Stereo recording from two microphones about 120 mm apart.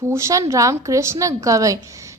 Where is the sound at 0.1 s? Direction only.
25° right (ahead or behind).